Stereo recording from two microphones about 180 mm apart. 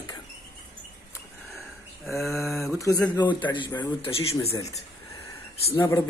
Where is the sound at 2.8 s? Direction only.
20° left (ahead or behind).